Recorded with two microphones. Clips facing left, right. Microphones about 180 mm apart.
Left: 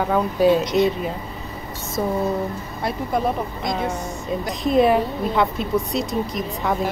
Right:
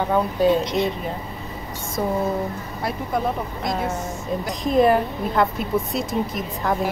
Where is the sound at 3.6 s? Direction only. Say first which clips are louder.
Right 2 dB; 5° right (ahead or behind).